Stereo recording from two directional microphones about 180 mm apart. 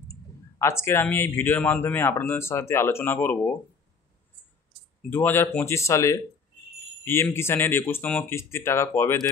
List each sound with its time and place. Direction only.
0.1 s speech: 15° left (ahead or behind)
5.1 s speech: 10° left (ahead or behind)